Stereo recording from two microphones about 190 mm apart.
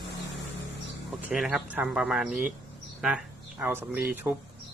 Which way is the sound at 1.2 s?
5° right (ahead or behind).